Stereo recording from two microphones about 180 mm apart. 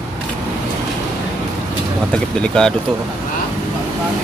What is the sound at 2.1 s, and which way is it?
Speech, 5° left (ahead or behind).